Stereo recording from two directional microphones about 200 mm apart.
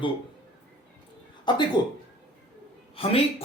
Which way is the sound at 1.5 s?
25° left (ahead or behind).